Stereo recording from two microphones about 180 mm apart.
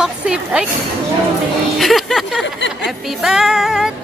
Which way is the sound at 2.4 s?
80° left.